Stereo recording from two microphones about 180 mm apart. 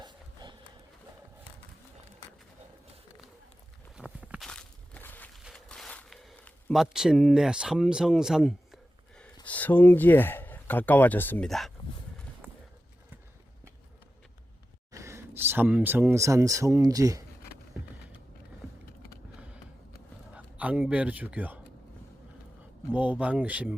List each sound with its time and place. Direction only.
0.0 s a sound: 25° right (ahead or behind)
3.9 s walk: 5° right (ahead or behind)
4.4 s crushing: 5° left (ahead or behind)
5.4 s zipper: centre (ahead or behind)
9.5 s speech: 10° left (ahead or behind)
12.4 s clip-clop: 10° right (ahead or behind)
14.9 s speech: 15° right (ahead or behind)
20.3 s a man's voice: 5° right (ahead or behind)
22.9 s speech: 10° right (ahead or behind)